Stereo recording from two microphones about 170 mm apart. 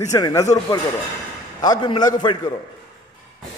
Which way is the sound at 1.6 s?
25° left (ahead or behind).